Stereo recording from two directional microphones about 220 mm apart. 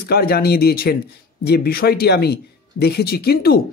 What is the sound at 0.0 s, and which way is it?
Speech, 45° left (ahead or behind).